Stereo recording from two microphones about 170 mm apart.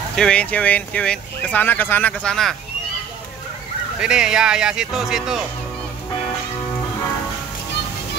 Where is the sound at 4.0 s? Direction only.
5° right (ahead or behind).